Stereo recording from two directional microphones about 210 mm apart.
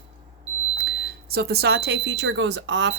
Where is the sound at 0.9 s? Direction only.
50° right (ahead or behind).